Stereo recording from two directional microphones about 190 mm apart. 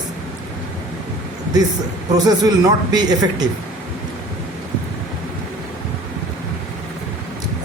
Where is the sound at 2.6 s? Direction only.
20° right (ahead or behind).